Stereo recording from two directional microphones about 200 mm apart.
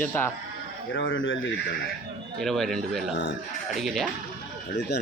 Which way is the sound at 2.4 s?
Centre (ahead or behind).